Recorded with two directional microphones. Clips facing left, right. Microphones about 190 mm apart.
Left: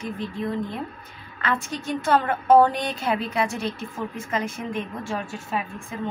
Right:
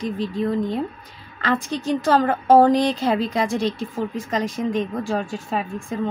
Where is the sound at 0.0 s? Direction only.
35° right (ahead or behind).